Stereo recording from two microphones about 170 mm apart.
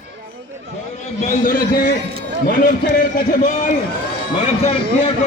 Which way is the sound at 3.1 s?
50° left (ahead or behind).